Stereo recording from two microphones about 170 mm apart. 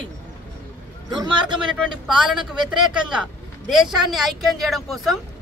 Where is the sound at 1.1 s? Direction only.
25° right (ahead or behind).